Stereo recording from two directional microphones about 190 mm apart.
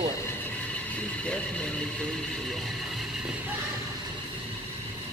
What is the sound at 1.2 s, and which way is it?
Speech, 5° left (ahead or behind).